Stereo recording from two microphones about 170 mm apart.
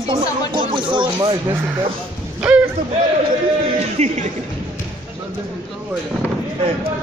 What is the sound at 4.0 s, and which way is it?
Speech, 40° right (ahead or behind).